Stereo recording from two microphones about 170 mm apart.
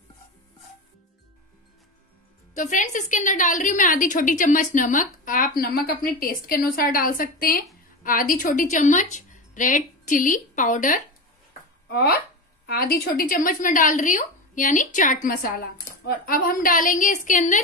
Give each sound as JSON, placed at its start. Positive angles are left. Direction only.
{"t": 2.5, "sound": "a woman's voice", "side_deg": 50}
{"t": 11.9, "sound": "a woman's voice", "side_deg": 65}